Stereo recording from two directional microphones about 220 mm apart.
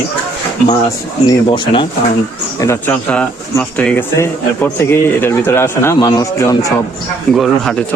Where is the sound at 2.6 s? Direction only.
10° left (ahead or behind).